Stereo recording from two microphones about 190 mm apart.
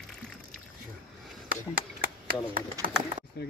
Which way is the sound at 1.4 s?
50° right (ahead or behind).